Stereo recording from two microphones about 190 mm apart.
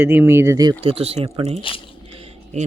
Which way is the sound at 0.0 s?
10° right (ahead or behind).